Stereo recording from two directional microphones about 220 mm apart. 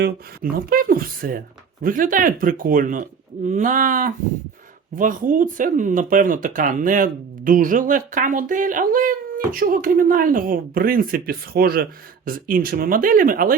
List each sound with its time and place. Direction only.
0.0 s speech: 40° right (ahead or behind)